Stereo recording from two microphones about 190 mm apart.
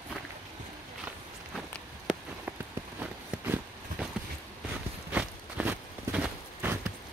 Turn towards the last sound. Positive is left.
turn(degrees=-10)  # may be behind; listen again after turning